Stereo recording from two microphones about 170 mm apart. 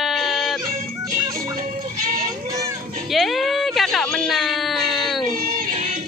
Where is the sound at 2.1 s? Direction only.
20° right (ahead or behind).